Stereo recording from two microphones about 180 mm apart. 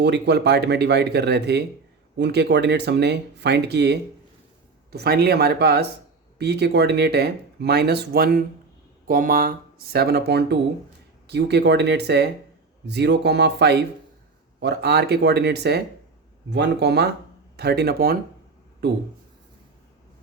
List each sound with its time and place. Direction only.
0.0 s speech: 70° right (ahead or behind)